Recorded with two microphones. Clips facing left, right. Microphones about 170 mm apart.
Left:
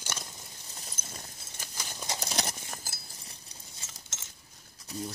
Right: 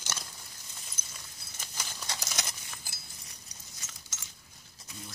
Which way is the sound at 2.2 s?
30° left (ahead or behind).